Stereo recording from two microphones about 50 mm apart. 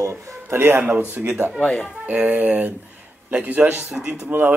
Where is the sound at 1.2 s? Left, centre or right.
Right.